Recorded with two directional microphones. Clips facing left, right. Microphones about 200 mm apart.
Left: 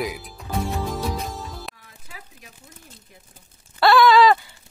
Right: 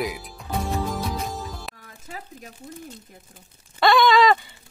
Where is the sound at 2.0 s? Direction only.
45° right (ahead or behind).